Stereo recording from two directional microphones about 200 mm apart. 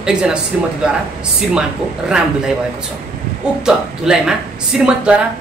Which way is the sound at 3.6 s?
5° right (ahead or behind).